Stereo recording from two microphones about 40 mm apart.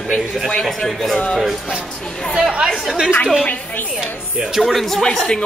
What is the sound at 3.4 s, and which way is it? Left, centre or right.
Speech, left.